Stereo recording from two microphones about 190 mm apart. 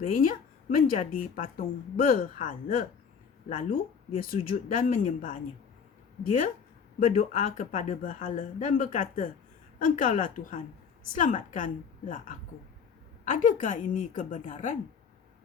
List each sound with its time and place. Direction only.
0.1 s a woman's voice: 45° left (ahead or behind)
7.0 s speech: 40° left (ahead or behind)